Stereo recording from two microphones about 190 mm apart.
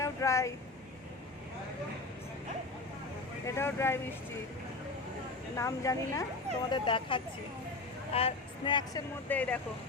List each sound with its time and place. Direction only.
0.0 s vehicle: 15° left (ahead or behind)
3.4 s speech: 15° left (ahead or behind)
5.5 s speech: 15° left (ahead or behind)
9.3 s speech: 10° left (ahead or behind)